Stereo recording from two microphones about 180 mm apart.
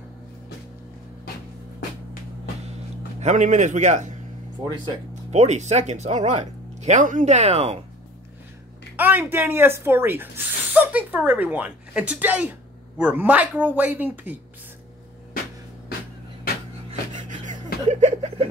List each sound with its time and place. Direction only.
3.2 s a man's voice: 40° right (ahead or behind)
4.6 s speech: 25° right (ahead or behind)
5.3 s speech: 40° right (ahead or behind)
8.9 s speech: 10° right (ahead or behind)
17.1 s music: 45° right (ahead or behind)
17.8 s chuckle: 40° right (ahead or behind)